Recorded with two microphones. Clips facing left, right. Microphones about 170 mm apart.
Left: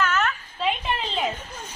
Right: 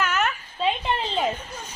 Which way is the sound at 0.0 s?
15° right (ahead or behind).